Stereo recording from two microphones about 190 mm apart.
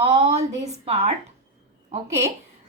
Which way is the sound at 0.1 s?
35° right (ahead or behind).